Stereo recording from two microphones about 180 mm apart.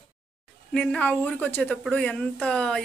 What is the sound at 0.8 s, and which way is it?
Speech, 5° left (ahead or behind).